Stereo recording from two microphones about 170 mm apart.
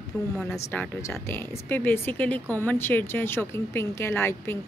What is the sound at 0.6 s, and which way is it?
A woman's voice, 15° left (ahead or behind).